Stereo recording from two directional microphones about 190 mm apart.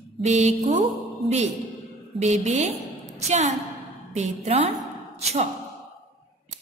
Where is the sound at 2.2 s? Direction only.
35° right (ahead or behind).